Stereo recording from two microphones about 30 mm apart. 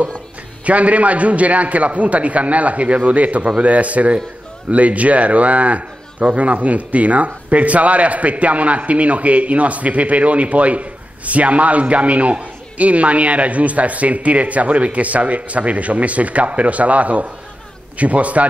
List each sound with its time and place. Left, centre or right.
0.7 s a man's voice: right